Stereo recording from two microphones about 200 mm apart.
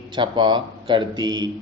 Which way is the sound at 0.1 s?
20° right (ahead or behind).